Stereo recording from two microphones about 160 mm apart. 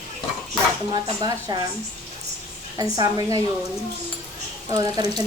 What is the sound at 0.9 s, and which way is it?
Speech, 25° right (ahead or behind).